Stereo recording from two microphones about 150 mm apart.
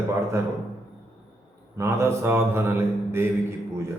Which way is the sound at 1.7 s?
20° right (ahead or behind).